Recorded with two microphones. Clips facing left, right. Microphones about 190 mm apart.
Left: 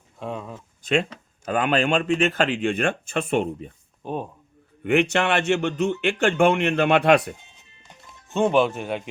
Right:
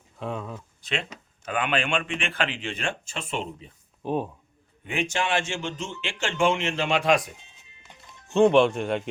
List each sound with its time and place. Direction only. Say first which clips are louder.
0.2 s speech: left 1 dB; centre (ahead or behind)
0.8 s speech: left 10 dB; 45° left (ahead or behind)
4.0 s speech: right 2 dB; centre (ahead or behind)
4.8 s speech: left 8 dB; 65° left (ahead or behind)
8.3 s speech: right 2 dB; centre (ahead or behind)